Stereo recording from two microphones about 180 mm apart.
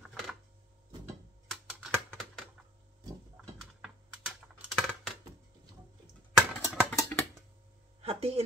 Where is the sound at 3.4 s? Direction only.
5° right (ahead or behind).